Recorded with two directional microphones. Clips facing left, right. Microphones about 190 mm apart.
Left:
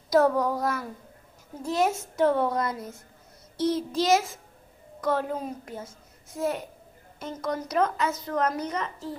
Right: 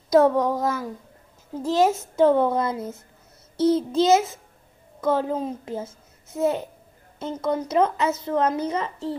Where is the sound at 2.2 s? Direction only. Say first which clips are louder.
Right 5 dB; 25° right (ahead or behind).